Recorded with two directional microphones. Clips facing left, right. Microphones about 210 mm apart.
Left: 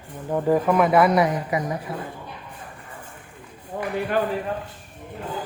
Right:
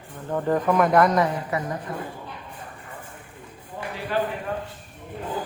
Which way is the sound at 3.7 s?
50° left (ahead or behind).